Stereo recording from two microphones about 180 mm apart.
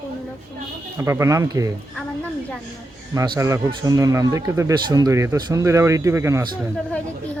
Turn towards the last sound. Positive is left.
turn(degrees=-15)  # may be behind; listen again after turning